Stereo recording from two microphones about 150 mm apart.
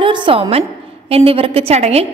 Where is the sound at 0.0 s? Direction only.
30° right (ahead or behind).